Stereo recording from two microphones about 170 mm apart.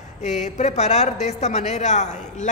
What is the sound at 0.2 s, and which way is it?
A woman's voice, 45° left (ahead or behind).